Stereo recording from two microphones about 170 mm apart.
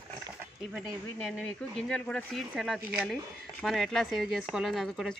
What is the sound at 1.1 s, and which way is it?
Speech, 5° left (ahead or behind).